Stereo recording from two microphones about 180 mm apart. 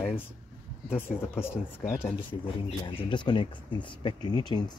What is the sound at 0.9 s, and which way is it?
Speech, 10° left (ahead or behind).